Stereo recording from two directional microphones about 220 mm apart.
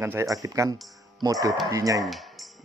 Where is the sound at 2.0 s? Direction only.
Centre (ahead or behind).